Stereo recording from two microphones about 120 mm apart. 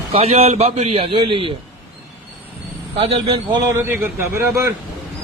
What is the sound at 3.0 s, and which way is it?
Speech, 55° right (ahead or behind).